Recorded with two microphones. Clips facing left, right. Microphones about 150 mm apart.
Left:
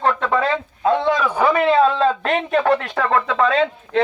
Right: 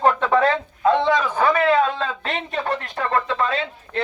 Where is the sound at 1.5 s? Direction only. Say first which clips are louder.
Left 4 dB; 25° left (ahead or behind); by 3.0 s 80° left.